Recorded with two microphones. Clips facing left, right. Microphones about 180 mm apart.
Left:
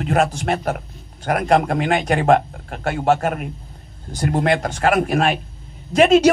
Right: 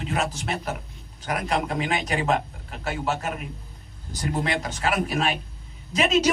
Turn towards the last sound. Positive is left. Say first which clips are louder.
# left 10 dB
turn(degrees=55)  # may be behind; listen again after turning